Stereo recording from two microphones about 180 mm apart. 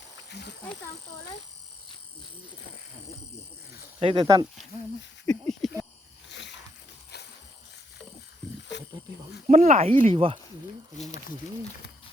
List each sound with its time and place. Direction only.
0.3 s speech: 70° left (ahead or behind)
4.0 s speech: 30° right (ahead or behind)
5.2 s speech: 5° left (ahead or behind)
6.2 s a sound: 75° left (ahead or behind)
9.5 s speech: 40° right (ahead or behind)
10.9 s speech: 40° left (ahead or behind)